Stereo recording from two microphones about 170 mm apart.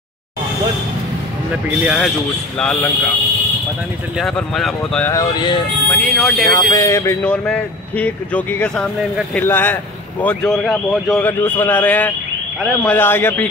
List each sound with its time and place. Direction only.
1.9 s speech: centre (ahead or behind)
4.2 s speech: centre (ahead or behind)
5.0 s speech: 20° left (ahead or behind)
5.9 s speech: 5° left (ahead or behind)
6.5 s speech: 20° left (ahead or behind)